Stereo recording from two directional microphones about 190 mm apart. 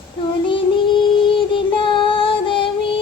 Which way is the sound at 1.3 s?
25° left (ahead or behind).